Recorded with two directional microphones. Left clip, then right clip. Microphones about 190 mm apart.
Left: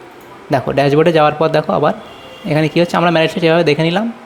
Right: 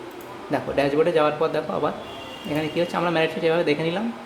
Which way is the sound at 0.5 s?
50° left (ahead or behind).